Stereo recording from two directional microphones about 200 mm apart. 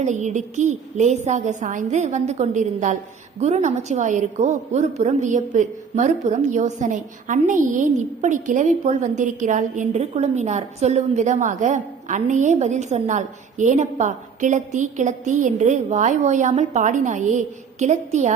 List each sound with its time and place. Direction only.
0.0 s a woman's voice: 35° right (ahead or behind)